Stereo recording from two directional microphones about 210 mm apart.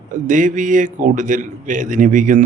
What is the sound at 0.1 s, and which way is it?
Speech, 40° right (ahead or behind).